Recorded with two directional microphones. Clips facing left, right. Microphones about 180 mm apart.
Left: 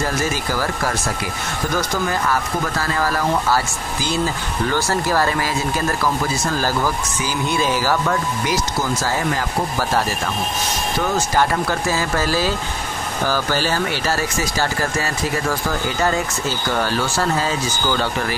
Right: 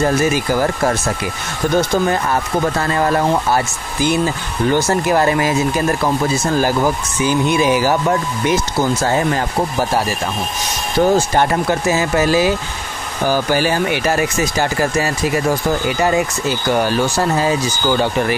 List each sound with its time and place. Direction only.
0.0 s speech: 25° right (ahead or behind)
11.0 s speech: 30° right (ahead or behind)
11.6 s speech: 20° right (ahead or behind)
16.7 s speech: 15° right (ahead or behind)